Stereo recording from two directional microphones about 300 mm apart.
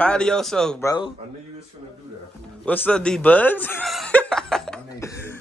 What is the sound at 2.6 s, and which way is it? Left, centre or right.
Chuckle, centre.